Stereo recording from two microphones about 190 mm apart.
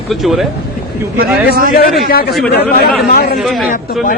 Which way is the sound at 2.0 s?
50° left (ahead or behind).